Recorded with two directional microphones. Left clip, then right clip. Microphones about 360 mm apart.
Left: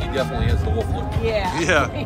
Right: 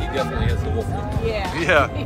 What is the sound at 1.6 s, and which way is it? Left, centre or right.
Speech, centre.